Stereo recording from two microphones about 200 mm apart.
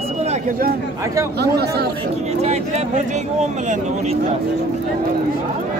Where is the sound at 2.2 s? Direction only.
35° right (ahead or behind).